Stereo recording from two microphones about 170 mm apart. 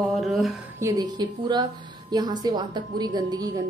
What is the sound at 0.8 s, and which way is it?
Speech, 20° right (ahead or behind).